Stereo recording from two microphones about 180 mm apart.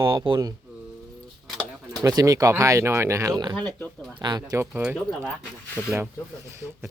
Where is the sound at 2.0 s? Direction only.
20° right (ahead or behind).